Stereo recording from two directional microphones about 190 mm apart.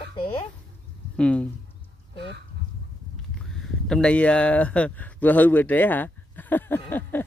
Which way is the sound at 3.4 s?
5° left (ahead or behind).